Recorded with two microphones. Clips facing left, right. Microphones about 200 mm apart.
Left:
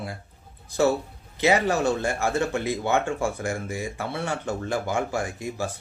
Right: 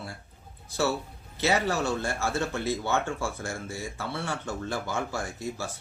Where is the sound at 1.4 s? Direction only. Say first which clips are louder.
Left 5 dB; 15° left (ahead or behind).